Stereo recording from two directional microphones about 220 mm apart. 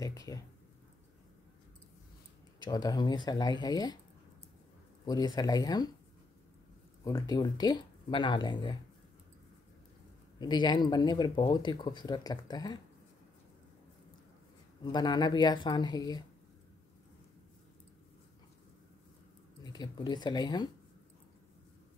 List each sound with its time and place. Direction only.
0.0 s speech: 15° left (ahead or behind)
2.6 s speech: 20° left (ahead or behind)
5.0 s speech: 15° left (ahead or behind)
7.1 s speech: 15° left (ahead or behind)
10.4 s speech: 20° left (ahead or behind)
14.8 s speech: 20° left (ahead or behind)
19.6 s speech: 20° left (ahead or behind)